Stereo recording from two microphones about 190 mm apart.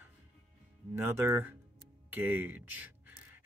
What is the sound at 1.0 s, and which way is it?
Speech, 10° right (ahead or behind).